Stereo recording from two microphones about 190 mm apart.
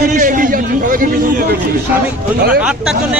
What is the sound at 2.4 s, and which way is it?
Speech, 50° right (ahead or behind).